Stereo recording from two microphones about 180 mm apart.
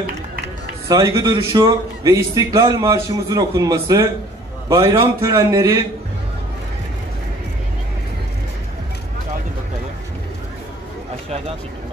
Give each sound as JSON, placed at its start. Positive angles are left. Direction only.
{"t": 0.8, "sound": "a man's voice", "side_deg": -20}
{"t": 11.2, "sound": "speech", "side_deg": -35}